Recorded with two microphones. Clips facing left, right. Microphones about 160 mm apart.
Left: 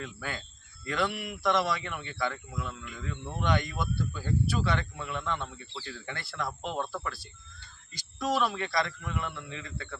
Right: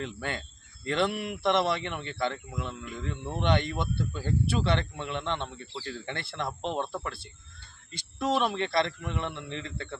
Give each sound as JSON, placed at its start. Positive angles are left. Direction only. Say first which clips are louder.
{"t": 0.0, "sound": "speech", "louder": "right 4 dB", "side_deg": -25}